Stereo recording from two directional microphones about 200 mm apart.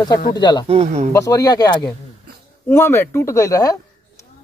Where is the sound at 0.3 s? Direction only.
20° left (ahead or behind).